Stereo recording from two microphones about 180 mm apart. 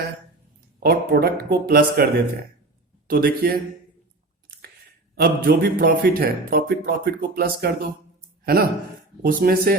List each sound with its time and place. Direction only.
0.8 s speech: 55° right (ahead or behind)
5.1 s a man's voice: 55° right (ahead or behind)
9.2 s speech: 55° right (ahead or behind)